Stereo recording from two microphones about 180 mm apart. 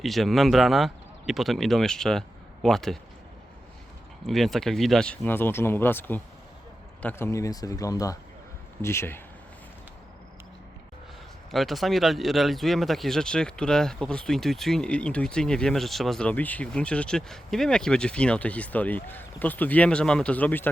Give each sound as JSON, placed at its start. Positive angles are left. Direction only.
{"t": 0.0, "sound": "speech", "side_deg": 0}
{"t": 4.3, "sound": "speech", "side_deg": 0}
{"t": 11.5, "sound": "speech", "side_deg": 0}